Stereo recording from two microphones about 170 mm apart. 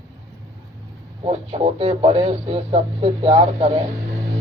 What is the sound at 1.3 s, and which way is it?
Speech, 40° right (ahead or behind).